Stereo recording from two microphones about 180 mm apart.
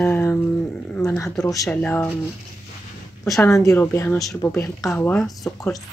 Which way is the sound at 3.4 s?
15° left (ahead or behind).